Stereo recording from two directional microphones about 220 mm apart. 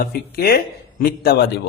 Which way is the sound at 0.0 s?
45° left (ahead or behind).